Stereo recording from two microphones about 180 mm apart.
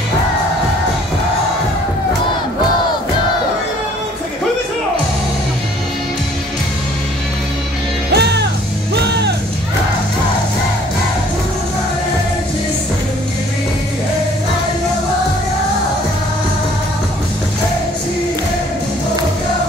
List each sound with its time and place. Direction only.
8.1 s music: 65° right (ahead or behind)